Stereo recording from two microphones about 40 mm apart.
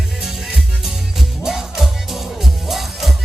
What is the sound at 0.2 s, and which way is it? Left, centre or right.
Music, centre.